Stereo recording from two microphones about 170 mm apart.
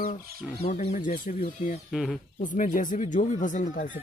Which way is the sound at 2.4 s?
50° left (ahead or behind).